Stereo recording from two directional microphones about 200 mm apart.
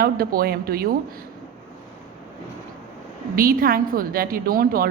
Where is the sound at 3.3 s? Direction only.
45° right (ahead or behind).